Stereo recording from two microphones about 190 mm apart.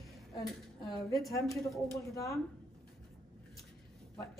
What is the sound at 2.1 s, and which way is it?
Speech, 15° left (ahead or behind).